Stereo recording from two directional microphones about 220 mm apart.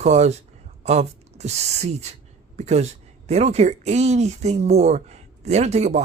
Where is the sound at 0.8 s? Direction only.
30° right (ahead or behind).